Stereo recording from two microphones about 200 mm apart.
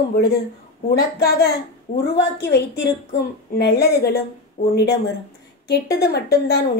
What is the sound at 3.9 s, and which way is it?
A woman's voice, 50° left (ahead or behind).